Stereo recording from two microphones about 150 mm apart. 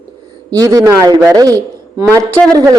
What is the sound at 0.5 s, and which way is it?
A woman's voice, 25° right (ahead or behind).